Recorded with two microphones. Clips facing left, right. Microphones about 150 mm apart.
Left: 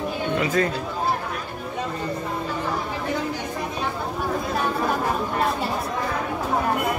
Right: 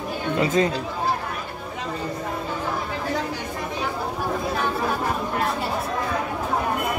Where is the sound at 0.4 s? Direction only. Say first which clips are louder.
Right 3 dB; 20° right (ahead or behind).